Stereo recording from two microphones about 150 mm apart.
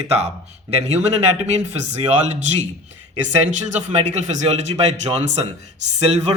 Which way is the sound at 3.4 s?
50° right (ahead or behind).